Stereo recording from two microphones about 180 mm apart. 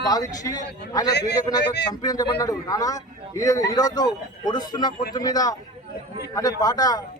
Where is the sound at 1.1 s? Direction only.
70° left (ahead or behind).